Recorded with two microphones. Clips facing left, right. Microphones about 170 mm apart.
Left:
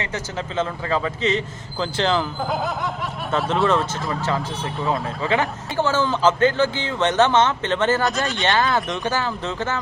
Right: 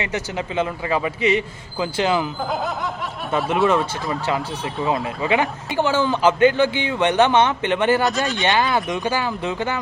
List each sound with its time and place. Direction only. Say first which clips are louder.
0.0 s a man's voice: right 3 dB; 15° right (ahead or behind)
4.3 s a man's voice: right 1 dB; 15° right (ahead or behind)
8.0 s speech: right 2 dB; centre (ahead or behind)
8.4 s a man's voice: even; 20° right (ahead or behind)